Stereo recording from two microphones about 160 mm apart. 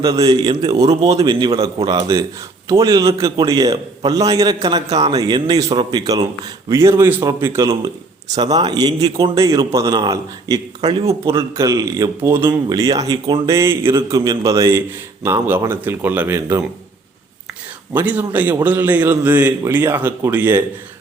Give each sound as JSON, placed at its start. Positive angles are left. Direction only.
{"t": 0.0, "sound": "a man's voice", "side_deg": -20}
{"t": 17.9, "sound": "a man's voice", "side_deg": -10}